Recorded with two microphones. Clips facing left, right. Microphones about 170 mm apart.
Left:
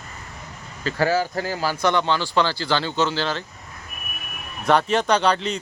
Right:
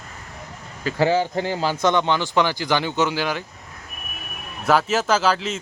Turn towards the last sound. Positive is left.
turn(degrees=0)  # may be behind; listen again after turning